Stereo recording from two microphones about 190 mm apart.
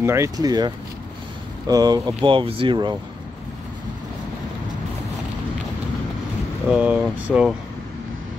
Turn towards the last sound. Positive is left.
turn(degrees=-5)  # may be behind; listen again after turning